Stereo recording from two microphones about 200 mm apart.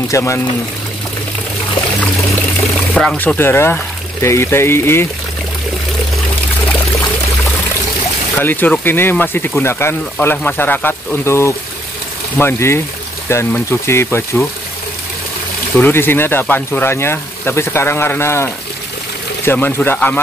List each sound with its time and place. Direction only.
0.1 s speech: 15° left (ahead or behind)
2.9 s speech: 5° left (ahead or behind)
8.4 s speech: 10° left (ahead or behind)
15.7 s speech: 10° left (ahead or behind)